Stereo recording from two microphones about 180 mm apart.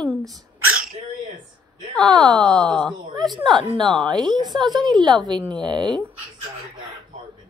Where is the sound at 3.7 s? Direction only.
25° right (ahead or behind).